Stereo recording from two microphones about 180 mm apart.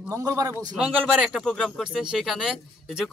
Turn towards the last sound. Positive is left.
turn(degrees=-5)  # may be behind; listen again after turning